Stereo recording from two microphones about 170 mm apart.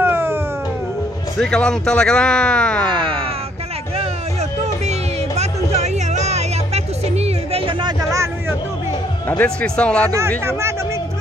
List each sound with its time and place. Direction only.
0.0 s cat: 15° right (ahead or behind)
1.4 s speech: 5° left (ahead or behind)
4.0 s music: 40° right (ahead or behind)
8.1 s a sound: 15° right (ahead or behind)
9.4 s speech: 5° left (ahead or behind)